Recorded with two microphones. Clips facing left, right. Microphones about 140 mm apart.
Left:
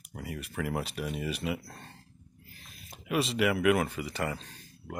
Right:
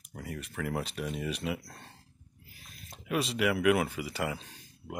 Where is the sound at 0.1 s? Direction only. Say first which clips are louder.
Left 1 dB; 5° left (ahead or behind).